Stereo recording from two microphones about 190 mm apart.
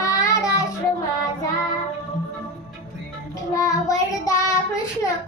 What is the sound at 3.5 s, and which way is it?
Child singing, 20° left (ahead or behind).